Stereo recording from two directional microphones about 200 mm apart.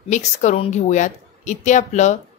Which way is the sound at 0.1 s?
35° left (ahead or behind).